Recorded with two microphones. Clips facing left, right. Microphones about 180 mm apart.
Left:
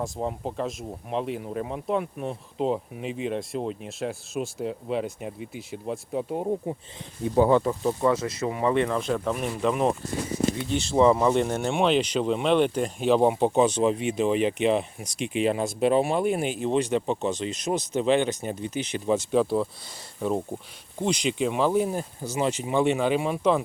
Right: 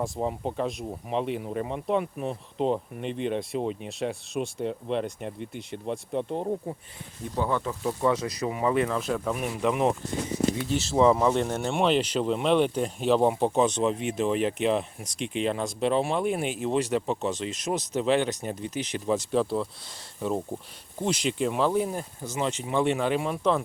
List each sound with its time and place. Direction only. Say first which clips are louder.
0.0 s speech: right 1 dB; centre (ahead or behind)
7.7 s speech: left 2 dB; 20° left (ahead or behind)
8.4 s speech: left 1 dB; 10° right (ahead or behind)
9.6 s speech: even; 15° right (ahead or behind)
10.7 s speech: left 2 dB; 5° right (ahead or behind)